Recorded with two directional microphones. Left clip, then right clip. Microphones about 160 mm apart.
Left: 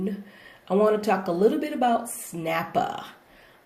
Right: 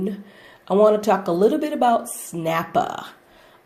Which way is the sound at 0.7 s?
30° right (ahead or behind).